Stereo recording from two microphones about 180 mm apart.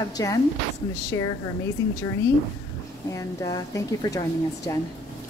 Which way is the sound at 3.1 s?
20° left (ahead or behind).